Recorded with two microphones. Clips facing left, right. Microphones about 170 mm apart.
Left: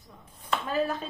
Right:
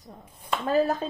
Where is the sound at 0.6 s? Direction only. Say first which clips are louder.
Right 6 dB; 40° right (ahead or behind).